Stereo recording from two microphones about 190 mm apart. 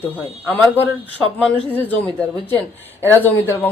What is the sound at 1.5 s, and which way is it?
A woman's voice, 10° left (ahead or behind).